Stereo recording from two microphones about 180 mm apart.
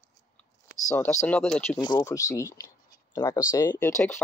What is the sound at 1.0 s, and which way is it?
Speech, 10° left (ahead or behind).